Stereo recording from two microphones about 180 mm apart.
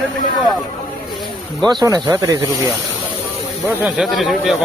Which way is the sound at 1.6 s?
20° right (ahead or behind).